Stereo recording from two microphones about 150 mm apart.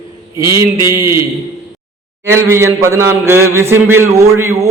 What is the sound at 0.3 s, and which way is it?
Speech, 20° right (ahead or behind).